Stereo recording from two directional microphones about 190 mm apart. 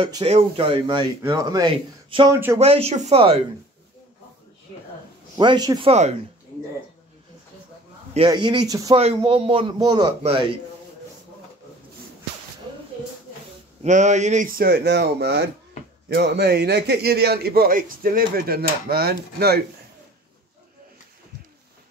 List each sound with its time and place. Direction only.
0.0 s speech: 30° right (ahead or behind)
2.3 s speech: 15° right (ahead or behind)
2.6 s speech: 35° right (ahead or behind)
5.4 s speech: 20° right (ahead or behind)
5.9 s speech: 35° right (ahead or behind)
8.3 s speech: 25° right (ahead or behind)
8.9 s speech: 30° right (ahead or behind)
13.8 s a man's voice: 40° right (ahead or behind); by 19.6 s 55° right (ahead or behind)